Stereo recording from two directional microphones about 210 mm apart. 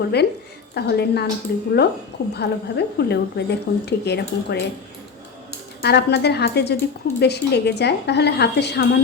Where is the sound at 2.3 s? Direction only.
50° left (ahead or behind).